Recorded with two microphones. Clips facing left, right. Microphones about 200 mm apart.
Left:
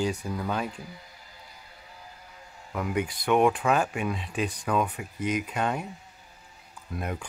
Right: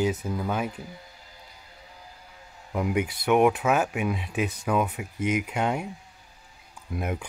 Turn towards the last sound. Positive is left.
turn(degrees=-10)  # may be behind; listen again after turning